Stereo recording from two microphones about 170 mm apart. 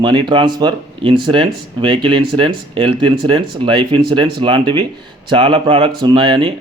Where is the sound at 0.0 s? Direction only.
30° right (ahead or behind).